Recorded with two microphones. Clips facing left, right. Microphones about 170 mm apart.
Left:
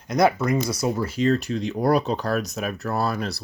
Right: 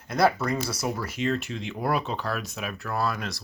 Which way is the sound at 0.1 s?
20° left (ahead or behind).